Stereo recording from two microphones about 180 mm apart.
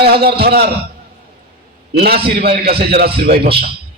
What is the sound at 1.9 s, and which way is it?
A man's voice, 60° right (ahead or behind).